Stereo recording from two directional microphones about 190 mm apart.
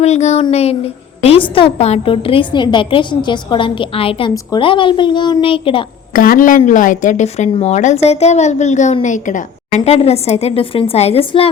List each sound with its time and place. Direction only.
0.0 s a woman's voice: 35° left (ahead or behind)
6.1 s a woman's voice: 45° left (ahead or behind); by 11.5 s 30° left (ahead or behind)